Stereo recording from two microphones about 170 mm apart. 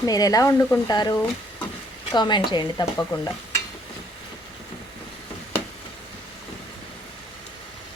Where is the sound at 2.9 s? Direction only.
15° left (ahead or behind).